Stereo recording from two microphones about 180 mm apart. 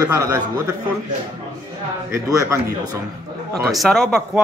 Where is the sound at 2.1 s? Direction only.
15° right (ahead or behind).